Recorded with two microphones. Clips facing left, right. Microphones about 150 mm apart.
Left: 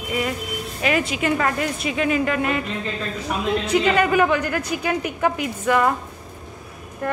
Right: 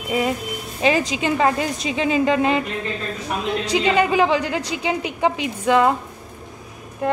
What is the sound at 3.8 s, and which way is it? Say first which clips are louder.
Speech: right 2 dB; 25° right (ahead or behind).